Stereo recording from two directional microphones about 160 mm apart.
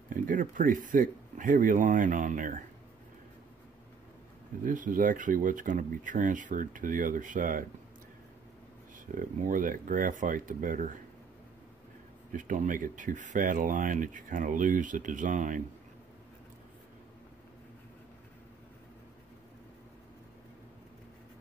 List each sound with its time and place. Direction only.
0.1 s speech: 55° right (ahead or behind)
4.6 s speech: 55° right (ahead or behind)
9.1 s speech: 60° right (ahead or behind)
12.3 s speech: 55° right (ahead or behind)